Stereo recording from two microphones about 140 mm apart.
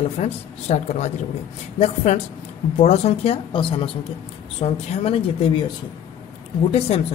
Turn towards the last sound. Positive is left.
turn(degrees=50)  # may be behind; listen again after turning